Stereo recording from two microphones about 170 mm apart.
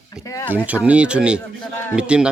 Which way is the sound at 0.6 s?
10° right (ahead or behind).